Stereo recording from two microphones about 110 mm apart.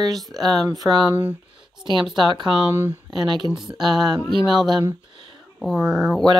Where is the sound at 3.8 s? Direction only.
40° right (ahead or behind).